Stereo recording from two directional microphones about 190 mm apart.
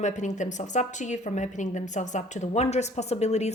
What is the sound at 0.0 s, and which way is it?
Speech, 40° left (ahead or behind).